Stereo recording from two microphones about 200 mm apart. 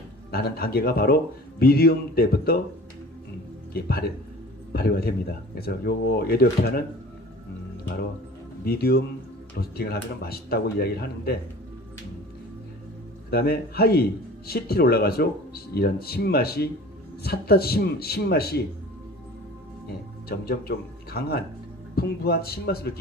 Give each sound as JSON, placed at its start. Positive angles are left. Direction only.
{"t": 0.3, "sound": "a man's voice", "side_deg": 50}
{"t": 3.7, "sound": "a man's voice", "side_deg": 50}
{"t": 8.6, "sound": "a man's voice", "side_deg": 50}
{"t": 13.3, "sound": "a man's voice", "side_deg": 50}
{"t": 20.2, "sound": "a man's voice", "side_deg": 50}